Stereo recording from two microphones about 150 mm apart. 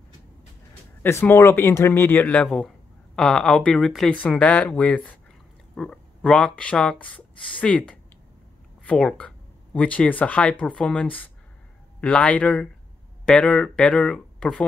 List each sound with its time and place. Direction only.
1.0 s speech: 15° left (ahead or behind)